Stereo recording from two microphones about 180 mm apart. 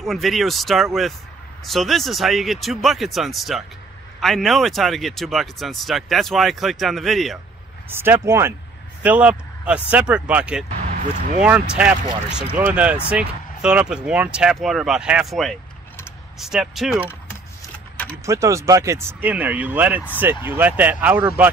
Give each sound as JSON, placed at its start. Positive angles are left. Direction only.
{"t": 0.0, "sound": "speech", "side_deg": 0}
{"t": 7.9, "sound": "speech", "side_deg": -15}
{"t": 11.0, "sound": "speech", "side_deg": -45}
{"t": 11.4, "sound": "speech", "side_deg": -5}
{"t": 18.2, "sound": "speech", "side_deg": -15}